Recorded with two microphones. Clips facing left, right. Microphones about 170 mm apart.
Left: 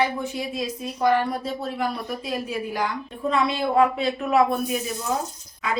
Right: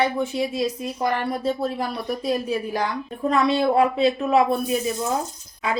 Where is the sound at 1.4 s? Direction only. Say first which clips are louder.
Right 3 dB; 40° right (ahead or behind).